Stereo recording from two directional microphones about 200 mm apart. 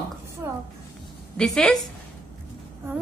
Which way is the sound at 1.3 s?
5° left (ahead or behind).